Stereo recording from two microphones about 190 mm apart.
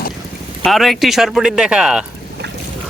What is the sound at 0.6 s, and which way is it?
Speech, centre (ahead or behind).